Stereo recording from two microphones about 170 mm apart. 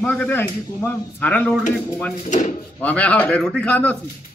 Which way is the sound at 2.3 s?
45° left (ahead or behind).